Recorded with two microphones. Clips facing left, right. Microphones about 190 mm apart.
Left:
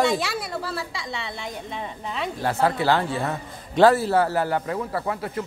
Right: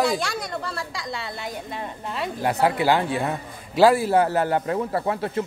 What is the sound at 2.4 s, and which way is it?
A man's voice, 15° right (ahead or behind).